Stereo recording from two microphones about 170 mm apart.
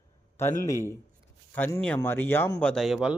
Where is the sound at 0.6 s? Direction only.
15° left (ahead or behind); by 3.2 s 5° right (ahead or behind).